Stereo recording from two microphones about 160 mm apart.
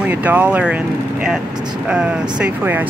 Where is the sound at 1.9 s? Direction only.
5° right (ahead or behind).